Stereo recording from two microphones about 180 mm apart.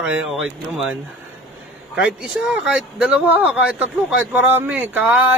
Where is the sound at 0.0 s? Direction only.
5° right (ahead or behind).